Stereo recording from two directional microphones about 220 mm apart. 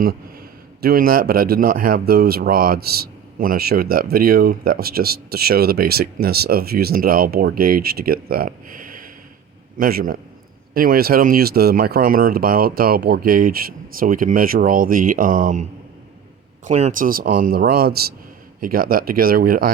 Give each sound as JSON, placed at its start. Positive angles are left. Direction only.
{"t": 0.8, "sound": "speech", "side_deg": -45}
{"t": 16.6, "sound": "speech", "side_deg": -30}